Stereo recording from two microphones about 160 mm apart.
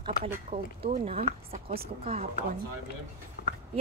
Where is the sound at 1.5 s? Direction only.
70° right (ahead or behind).